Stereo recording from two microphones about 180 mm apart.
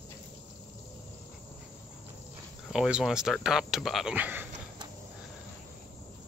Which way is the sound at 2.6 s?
5° right (ahead or behind).